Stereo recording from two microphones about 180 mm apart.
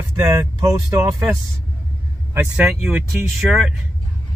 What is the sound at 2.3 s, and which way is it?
Speech, 10° right (ahead or behind).